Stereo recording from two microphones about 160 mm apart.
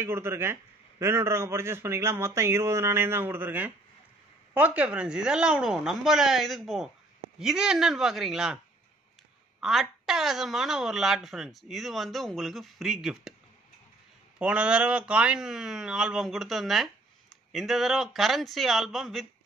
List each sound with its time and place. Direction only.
0.0 s a man's voice: 15° right (ahead or behind)
9.6 s speech: centre (ahead or behind)
14.4 s speech: 5° right (ahead or behind)